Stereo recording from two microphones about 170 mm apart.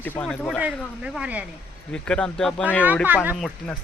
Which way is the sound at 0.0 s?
10° left (ahead or behind).